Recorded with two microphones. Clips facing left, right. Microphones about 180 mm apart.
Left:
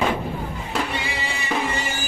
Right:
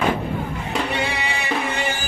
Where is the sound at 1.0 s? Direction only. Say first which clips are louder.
Right 4 dB; 70° right (ahead or behind).